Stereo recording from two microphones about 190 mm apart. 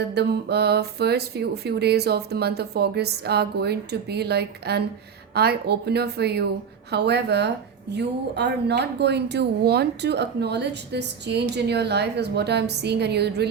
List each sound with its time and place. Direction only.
0.1 s a woman's voice: 60° right (ahead or behind)